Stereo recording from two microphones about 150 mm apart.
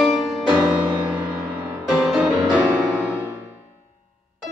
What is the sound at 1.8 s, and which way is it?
Music, centre (ahead or behind).